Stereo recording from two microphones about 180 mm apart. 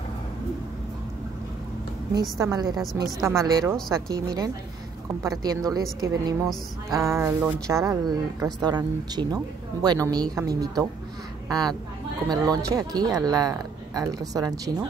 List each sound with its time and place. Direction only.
2.3 s a woman's voice: 20° right (ahead or behind)